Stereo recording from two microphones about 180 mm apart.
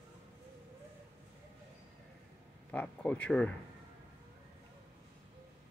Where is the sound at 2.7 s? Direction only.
5° left (ahead or behind).